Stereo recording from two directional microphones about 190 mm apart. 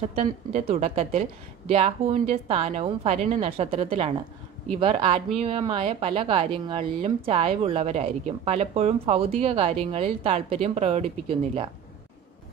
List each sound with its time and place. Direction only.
0.1 s a woman's voice: 35° right (ahead or behind)